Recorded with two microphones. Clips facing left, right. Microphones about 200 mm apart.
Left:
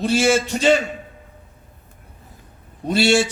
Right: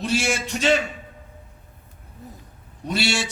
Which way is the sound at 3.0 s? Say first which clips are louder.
Left 11 dB; 50° left (ahead or behind).